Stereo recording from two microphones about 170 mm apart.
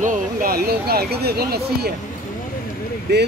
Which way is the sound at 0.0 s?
55° right (ahead or behind).